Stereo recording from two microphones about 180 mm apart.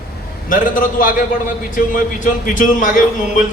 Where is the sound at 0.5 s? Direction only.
50° left (ahead or behind).